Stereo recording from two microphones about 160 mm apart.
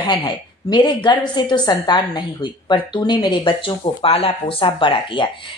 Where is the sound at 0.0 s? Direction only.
30° left (ahead or behind).